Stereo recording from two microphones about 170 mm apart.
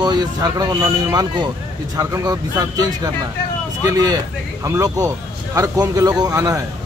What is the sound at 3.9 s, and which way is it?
A man's voice, 20° right (ahead or behind).